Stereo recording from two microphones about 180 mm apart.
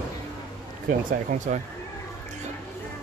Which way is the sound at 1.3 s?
45° right (ahead or behind).